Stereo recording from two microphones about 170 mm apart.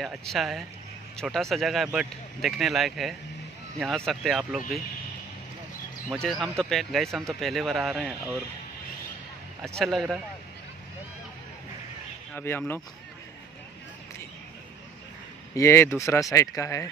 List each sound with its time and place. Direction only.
0.0 s speech: centre (ahead or behind)
6.2 s speech: 5° left (ahead or behind)
9.8 s speech: centre (ahead or behind)
12.4 s speech: 15° left (ahead or behind)
15.5 s speech: 15° left (ahead or behind)